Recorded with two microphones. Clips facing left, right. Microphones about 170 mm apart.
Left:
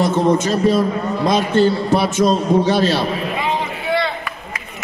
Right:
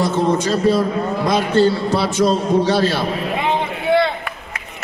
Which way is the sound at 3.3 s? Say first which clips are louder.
Right 1 dB; 60° right (ahead or behind).